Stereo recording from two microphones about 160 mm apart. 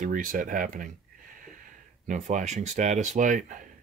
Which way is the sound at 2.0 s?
50° right (ahead or behind).